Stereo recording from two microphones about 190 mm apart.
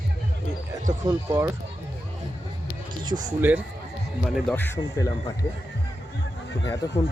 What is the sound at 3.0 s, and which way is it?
Speech, 20° right (ahead or behind).